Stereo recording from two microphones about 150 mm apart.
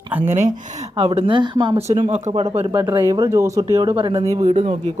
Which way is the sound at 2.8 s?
20° right (ahead or behind).